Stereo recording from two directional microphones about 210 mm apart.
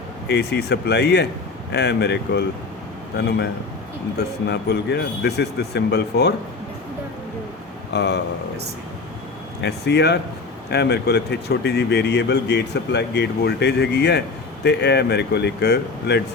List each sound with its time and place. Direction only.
0.3 s speech: 50° left (ahead or behind)
7.9 s speech: 55° left (ahead or behind)
9.6 s speech: 50° left (ahead or behind)